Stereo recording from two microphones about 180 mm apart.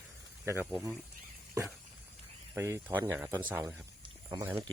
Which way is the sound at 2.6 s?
15° right (ahead or behind).